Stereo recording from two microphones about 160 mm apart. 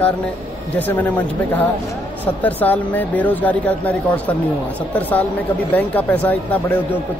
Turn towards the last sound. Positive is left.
turn(degrees=10)  # may be behind; listen again after turning